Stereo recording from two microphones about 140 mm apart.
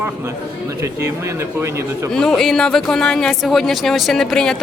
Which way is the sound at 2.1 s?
5° left (ahead or behind).